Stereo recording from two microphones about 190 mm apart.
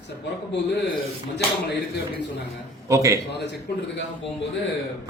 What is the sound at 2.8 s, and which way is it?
Speech, 15° right (ahead or behind).